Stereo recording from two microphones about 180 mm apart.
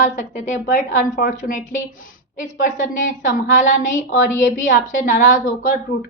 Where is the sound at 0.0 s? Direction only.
40° left (ahead or behind).